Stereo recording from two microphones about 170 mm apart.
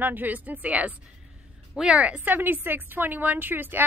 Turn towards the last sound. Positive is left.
turn(degrees=-10)  # may be behind; listen again after turning